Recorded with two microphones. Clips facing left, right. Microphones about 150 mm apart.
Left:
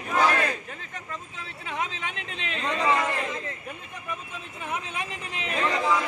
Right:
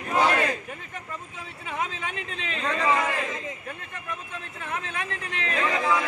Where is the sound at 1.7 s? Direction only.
5° right (ahead or behind).